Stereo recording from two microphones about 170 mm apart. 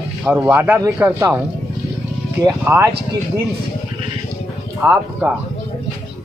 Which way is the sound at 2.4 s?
15° right (ahead or behind).